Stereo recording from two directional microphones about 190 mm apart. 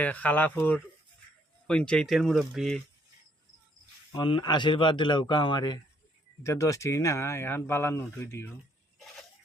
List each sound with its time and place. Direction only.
0.0 s speech: 10° left (ahead or behind)
4.1 s a man's voice: 25° left (ahead or behind)